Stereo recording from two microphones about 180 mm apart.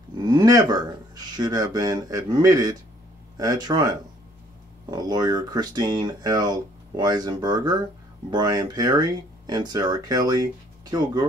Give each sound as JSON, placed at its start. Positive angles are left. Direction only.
{"t": 0.3, "sound": "speech", "side_deg": -20}